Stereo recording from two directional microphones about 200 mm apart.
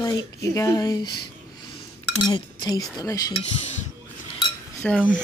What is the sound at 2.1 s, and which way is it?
Speech, 20° left (ahead or behind).